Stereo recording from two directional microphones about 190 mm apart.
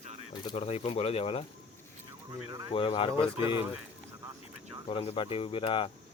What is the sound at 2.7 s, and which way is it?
Speech, 25° left (ahead or behind).